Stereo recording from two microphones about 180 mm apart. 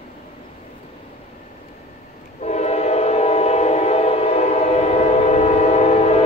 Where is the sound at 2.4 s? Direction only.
40° left (ahead or behind).